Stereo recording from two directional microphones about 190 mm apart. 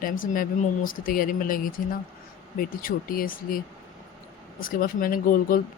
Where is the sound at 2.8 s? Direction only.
50° left (ahead or behind).